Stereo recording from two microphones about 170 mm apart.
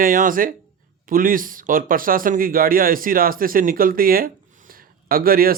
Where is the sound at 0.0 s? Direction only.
55° right (ahead or behind).